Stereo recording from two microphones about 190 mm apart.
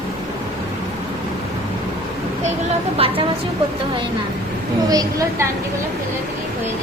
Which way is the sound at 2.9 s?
30° right (ahead or behind).